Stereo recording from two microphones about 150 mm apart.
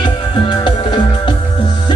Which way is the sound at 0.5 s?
30° left (ahead or behind).